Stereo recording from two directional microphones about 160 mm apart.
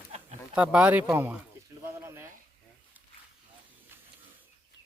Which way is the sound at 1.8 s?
15° right (ahead or behind).